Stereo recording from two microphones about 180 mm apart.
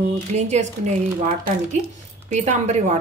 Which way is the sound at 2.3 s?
40° right (ahead or behind).